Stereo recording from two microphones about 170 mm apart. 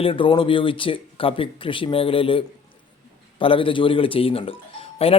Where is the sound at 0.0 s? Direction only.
30° left (ahead or behind).